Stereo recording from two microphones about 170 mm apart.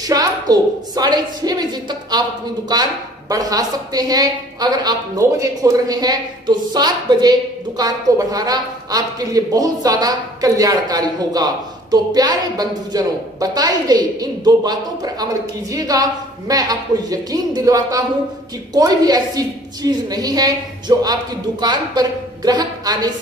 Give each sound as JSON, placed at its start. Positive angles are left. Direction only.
{"t": 0.0, "sound": "a woman's voice", "side_deg": -20}